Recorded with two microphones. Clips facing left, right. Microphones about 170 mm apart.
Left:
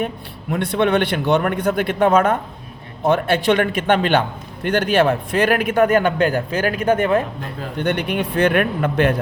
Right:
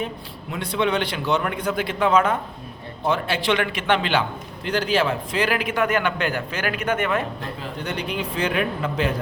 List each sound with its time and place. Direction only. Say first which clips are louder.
0.5 s a man's voice: left 5 dB; 55° left (ahead or behind)
4.6 s a man's voice: left 5 dB; 60° left (ahead or behind); by 7.3 s 35° left (ahead or behind)
7.8 s a man's voice: left 8 dB; 60° left (ahead or behind)